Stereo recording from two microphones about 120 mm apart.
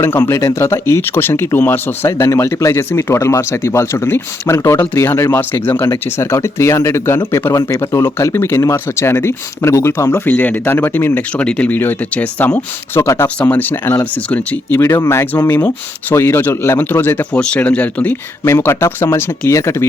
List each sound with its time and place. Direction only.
0.0 s speech: 20° left (ahead or behind)